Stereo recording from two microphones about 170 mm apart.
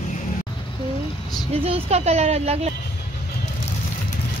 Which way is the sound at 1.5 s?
35° right (ahead or behind).